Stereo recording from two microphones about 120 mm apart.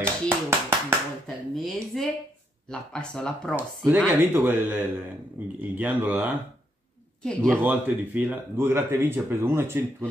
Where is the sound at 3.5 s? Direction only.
15° right (ahead or behind).